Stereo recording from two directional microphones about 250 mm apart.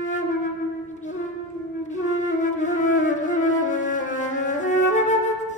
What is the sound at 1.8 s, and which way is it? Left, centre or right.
Flute, left.